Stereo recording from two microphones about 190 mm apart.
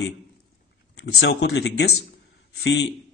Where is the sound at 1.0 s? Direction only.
60° left (ahead or behind).